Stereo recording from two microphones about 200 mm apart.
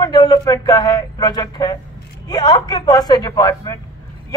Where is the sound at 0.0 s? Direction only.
20° left (ahead or behind).